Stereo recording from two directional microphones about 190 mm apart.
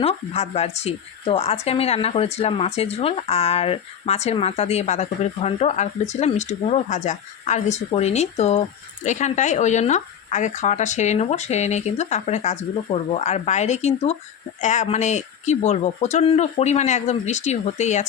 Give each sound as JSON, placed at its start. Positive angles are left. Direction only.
{"t": 0.0, "sound": "speech", "side_deg": 35}